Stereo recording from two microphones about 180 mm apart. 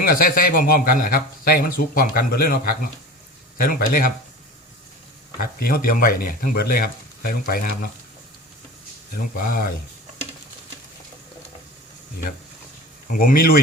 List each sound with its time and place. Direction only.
0.0 s a man's voice: 55° left (ahead or behind)
5.4 s speech: 55° left (ahead or behind)
9.1 s a man's voice: 50° left (ahead or behind)
13.1 s a man's voice: 50° left (ahead or behind)